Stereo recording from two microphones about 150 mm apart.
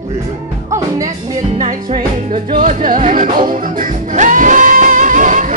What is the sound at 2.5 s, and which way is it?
Music, 55° right (ahead or behind).